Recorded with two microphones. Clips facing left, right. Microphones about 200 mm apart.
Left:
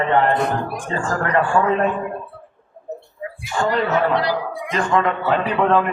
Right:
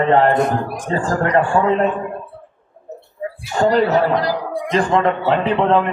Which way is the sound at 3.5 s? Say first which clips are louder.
Right 5 dB; 35° right (ahead or behind).